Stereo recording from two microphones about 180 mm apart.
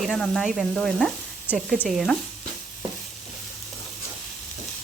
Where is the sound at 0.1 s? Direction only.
Centre (ahead or behind).